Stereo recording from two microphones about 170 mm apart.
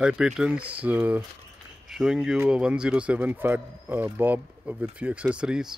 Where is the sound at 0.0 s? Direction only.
5° right (ahead or behind).